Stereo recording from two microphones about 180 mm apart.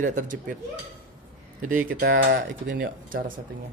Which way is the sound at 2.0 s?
50° right (ahead or behind).